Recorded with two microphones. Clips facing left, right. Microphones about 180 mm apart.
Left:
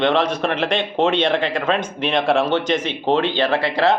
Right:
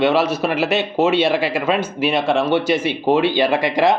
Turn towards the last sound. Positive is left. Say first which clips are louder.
# right 2 dB
turn(degrees=-15)  # may be behind; listen again after turning